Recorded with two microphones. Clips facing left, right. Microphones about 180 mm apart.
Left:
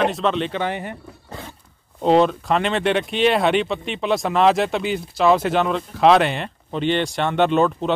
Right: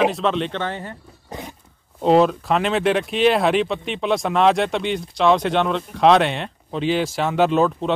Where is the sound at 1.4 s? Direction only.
20° right (ahead or behind).